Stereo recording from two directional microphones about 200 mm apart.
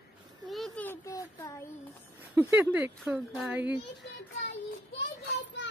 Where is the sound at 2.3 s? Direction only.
10° right (ahead or behind).